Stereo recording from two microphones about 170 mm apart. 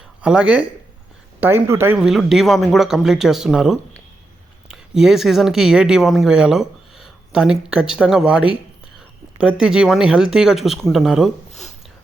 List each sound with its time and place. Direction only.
0.2 s speech: 5° right (ahead or behind)
2.0 s speech: centre (ahead or behind)